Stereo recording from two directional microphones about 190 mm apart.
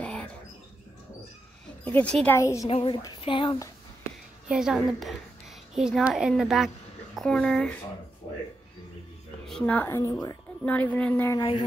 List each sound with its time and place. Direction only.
0.0 s mouse: 5° left (ahead or behind)
1.9 s a woman's voice: 5° left (ahead or behind)
4.5 s a woman's voice: 5° right (ahead or behind)
9.5 s a woman's voice: 5° left (ahead or behind)